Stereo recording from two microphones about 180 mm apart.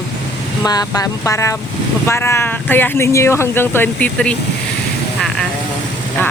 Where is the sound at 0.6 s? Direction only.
20° left (ahead or behind).